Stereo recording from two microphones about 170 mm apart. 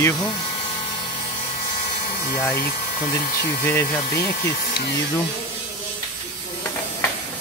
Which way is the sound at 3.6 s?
15° left (ahead or behind).